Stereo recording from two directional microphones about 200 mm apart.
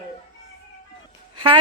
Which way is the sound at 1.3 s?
25° right (ahead or behind).